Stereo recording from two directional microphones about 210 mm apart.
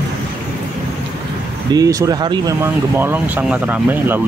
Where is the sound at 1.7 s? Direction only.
15° right (ahead or behind).